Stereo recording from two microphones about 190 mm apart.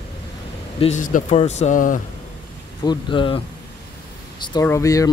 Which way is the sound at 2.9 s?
25° left (ahead or behind).